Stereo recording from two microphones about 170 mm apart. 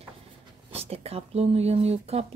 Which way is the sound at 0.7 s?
35° right (ahead or behind).